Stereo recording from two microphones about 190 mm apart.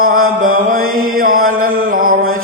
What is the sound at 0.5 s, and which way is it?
Mantra, 50° right (ahead or behind).